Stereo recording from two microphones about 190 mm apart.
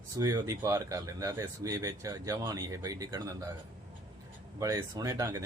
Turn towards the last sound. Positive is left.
turn(degrees=-15)  # may be behind; listen again after turning